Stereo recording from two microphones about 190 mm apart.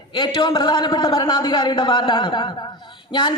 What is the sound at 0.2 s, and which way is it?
A man's voice, 25° left (ahead or behind).